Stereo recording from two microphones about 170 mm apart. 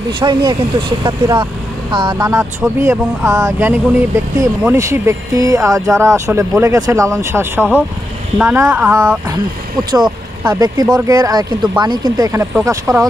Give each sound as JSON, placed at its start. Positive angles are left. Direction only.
{"t": 0.2, "sound": "speech", "side_deg": -25}
{"t": 10.6, "sound": "speech", "side_deg": -25}